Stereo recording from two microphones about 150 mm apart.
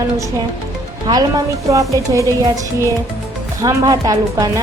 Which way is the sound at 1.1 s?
30° right (ahead or behind).